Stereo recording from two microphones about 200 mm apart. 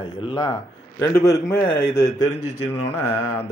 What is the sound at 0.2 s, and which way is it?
A man's voice, 25° left (ahead or behind).